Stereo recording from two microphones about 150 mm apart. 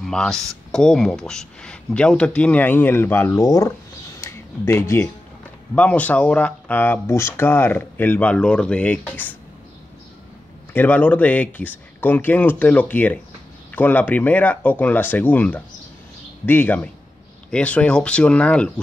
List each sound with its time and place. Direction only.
0.0 s speech: 5° left (ahead or behind); by 3.7 s 20° left (ahead or behind)
4.2 s music: 20° left (ahead or behind)
5.8 s speech: 10° left (ahead or behind)
10.7 s speech: 10° left (ahead or behind)